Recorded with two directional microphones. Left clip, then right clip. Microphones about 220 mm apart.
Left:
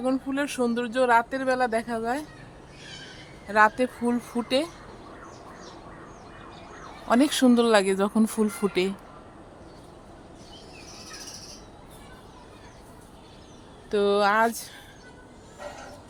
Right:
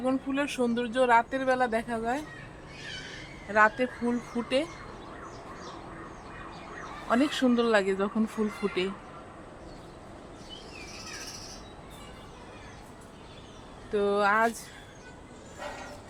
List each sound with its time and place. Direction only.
0.0 s speech: 35° left (ahead or behind)
3.5 s speech: 45° left (ahead or behind)
7.1 s speech: 40° left (ahead or behind)
13.9 s speech: 50° left (ahead or behind)